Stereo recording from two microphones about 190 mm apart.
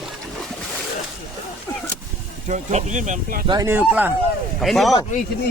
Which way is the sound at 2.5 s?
40° right (ahead or behind).